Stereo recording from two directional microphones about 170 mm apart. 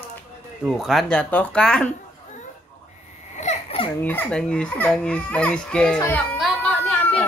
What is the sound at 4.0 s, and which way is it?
Speech, 10° left (ahead or behind).